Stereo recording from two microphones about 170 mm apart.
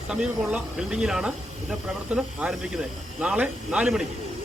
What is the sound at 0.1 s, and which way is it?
Speech, 5° right (ahead or behind).